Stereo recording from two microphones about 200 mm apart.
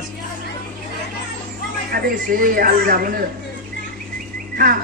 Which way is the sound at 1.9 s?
45° right (ahead or behind).